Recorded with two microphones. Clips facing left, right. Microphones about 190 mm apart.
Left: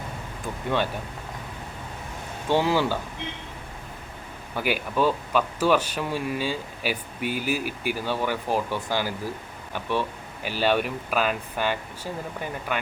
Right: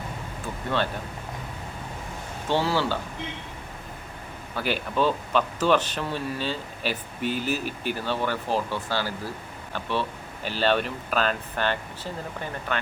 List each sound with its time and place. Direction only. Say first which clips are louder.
2.5 s speech: left 2 dB; 15° left (ahead or behind)
4.5 s speech: left 1 dB; 10° left (ahead or behind)